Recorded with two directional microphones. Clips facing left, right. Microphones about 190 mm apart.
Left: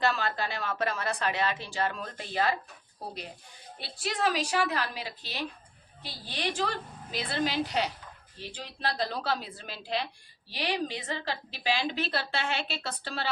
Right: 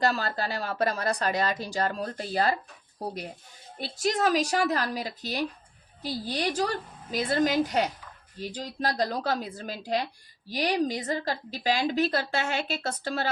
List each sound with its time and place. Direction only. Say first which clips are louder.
0.0 s speech: right 2 dB; 40° right (ahead or behind)
3.8 s a woman's voice: right 5 dB; 45° right (ahead or behind)